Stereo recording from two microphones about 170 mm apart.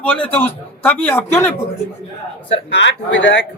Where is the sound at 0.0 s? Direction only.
10° left (ahead or behind).